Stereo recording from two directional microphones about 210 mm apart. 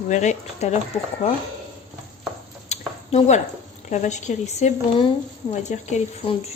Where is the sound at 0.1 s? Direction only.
35° left (ahead or behind).